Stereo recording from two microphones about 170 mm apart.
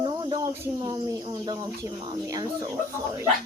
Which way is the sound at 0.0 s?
25° right (ahead or behind).